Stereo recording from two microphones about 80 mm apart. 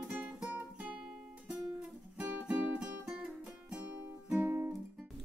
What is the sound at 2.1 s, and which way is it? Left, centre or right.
Music, centre.